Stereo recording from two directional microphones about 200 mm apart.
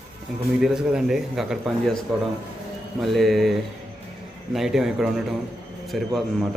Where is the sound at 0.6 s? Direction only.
5° right (ahead or behind).